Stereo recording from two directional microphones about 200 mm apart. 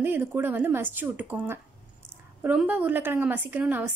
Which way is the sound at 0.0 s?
10° right (ahead or behind).